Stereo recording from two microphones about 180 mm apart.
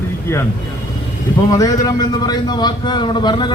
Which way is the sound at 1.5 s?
20° left (ahead or behind).